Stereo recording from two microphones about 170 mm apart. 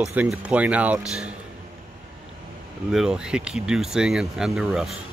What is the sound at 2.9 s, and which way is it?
Speech, 5° right (ahead or behind).